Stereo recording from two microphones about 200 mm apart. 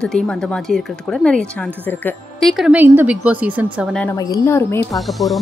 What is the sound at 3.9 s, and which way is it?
Speech, 5° left (ahead or behind).